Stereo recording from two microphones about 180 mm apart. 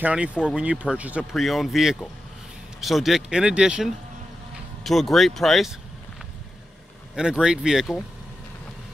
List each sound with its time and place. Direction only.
0.0 s speech: 5° right (ahead or behind)
7.2 s speech: 5° right (ahead or behind)